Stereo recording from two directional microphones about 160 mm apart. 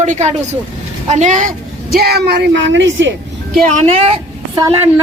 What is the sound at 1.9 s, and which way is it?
Speech, 80° right.